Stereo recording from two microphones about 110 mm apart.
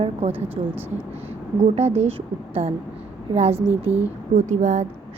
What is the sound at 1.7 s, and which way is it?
Speech, 75° right (ahead or behind).